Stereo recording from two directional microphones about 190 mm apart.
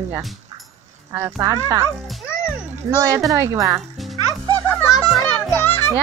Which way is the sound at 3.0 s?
15° right (ahead or behind).